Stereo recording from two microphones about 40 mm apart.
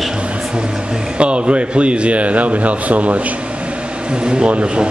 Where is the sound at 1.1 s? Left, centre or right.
Right.